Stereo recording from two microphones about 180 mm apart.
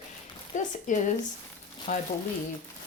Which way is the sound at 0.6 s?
45° left (ahead or behind).